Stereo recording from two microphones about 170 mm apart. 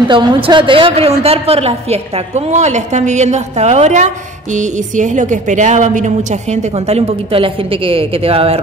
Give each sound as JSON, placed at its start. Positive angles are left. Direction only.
{"t": 0.1, "sound": "a woman's voice", "side_deg": -25}